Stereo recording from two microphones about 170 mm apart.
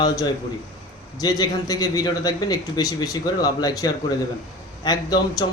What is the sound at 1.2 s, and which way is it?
A man's voice, 20° left (ahead or behind).